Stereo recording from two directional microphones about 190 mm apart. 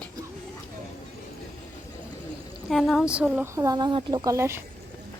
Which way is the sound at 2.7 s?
Centre (ahead or behind).